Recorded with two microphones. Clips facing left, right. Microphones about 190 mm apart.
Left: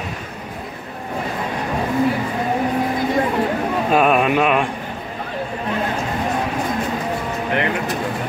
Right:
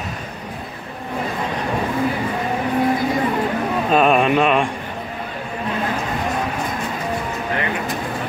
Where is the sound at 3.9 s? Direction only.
5° left (ahead or behind).